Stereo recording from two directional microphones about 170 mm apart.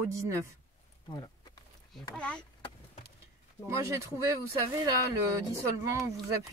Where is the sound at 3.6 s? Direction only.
15° right (ahead or behind).